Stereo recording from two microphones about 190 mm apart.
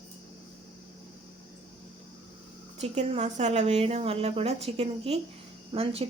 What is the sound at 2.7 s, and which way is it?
A woman's voice, 35° right (ahead or behind).